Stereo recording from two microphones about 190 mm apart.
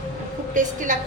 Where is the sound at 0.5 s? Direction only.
45° right (ahead or behind).